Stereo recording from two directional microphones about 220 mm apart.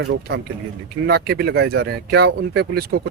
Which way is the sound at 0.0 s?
50° right (ahead or behind).